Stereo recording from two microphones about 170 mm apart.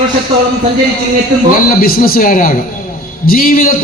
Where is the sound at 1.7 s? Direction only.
60° left (ahead or behind).